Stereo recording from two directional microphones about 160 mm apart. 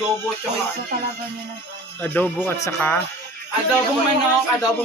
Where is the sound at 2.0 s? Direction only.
10° left (ahead or behind).